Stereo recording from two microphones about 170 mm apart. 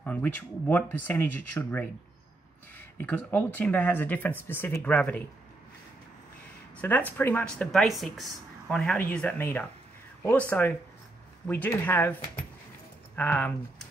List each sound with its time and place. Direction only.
0.0 s speech: 10° left (ahead or behind)
3.0 s speech: 10° left (ahead or behind)
6.8 s speech: 10° left (ahead or behind)
11.4 s speech: 10° left (ahead or behind)